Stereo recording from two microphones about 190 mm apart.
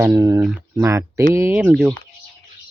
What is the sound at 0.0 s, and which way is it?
Speech, 15° right (ahead or behind).